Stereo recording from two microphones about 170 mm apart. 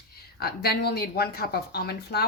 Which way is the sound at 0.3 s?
65° left (ahead or behind).